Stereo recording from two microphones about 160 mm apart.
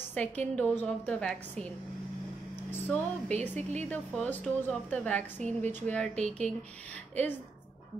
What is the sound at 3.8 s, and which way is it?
A woman's voice, 5° left (ahead or behind).